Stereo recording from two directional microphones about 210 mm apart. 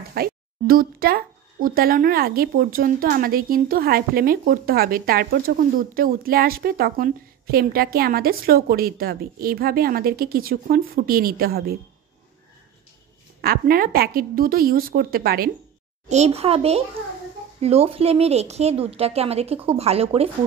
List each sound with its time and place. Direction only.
0.1 s speech: 45° right (ahead or behind)
13.4 s speech: 45° right (ahead or behind)
16.1 s speech: 30° right (ahead or behind)